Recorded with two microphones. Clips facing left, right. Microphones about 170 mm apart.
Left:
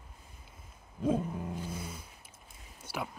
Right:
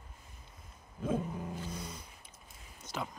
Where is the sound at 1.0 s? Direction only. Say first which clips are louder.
Left 4 dB; 10° left (ahead or behind).